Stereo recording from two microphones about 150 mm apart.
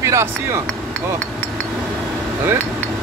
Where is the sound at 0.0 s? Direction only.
20° right (ahead or behind).